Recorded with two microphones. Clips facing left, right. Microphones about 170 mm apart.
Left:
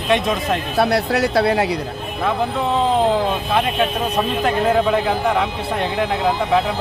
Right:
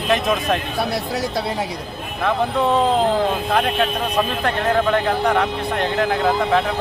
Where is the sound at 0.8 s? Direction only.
65° left (ahead or behind).